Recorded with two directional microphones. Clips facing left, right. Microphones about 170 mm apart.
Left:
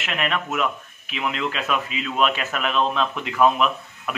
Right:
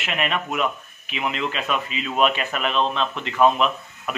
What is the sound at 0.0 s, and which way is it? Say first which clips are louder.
Speech: even; 5° right (ahead or behind).